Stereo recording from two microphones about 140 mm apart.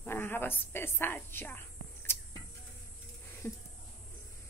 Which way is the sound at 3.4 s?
15° left (ahead or behind).